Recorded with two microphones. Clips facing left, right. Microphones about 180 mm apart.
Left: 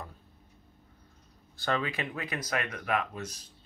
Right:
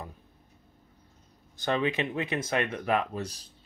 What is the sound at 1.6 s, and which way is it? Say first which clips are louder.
Speech: right 4 dB; 20° right (ahead or behind).